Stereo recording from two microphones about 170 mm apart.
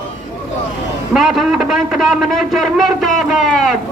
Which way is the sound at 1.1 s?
Centre (ahead or behind).